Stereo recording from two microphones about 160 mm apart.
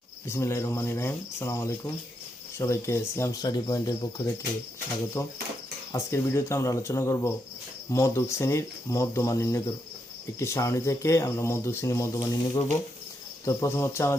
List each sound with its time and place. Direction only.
0.3 s speech: 15° left (ahead or behind)
5.2 s speech: 15° left (ahead or behind)